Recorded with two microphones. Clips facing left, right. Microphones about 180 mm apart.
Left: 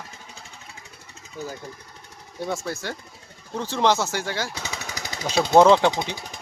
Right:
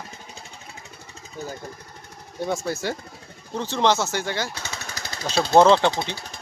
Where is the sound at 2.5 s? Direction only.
Centre (ahead or behind).